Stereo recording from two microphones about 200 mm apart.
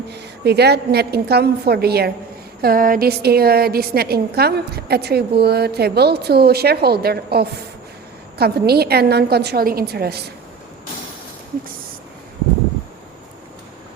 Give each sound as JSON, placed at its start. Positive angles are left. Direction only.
{"t": 0.1, "sound": "a woman's voice", "side_deg": -55}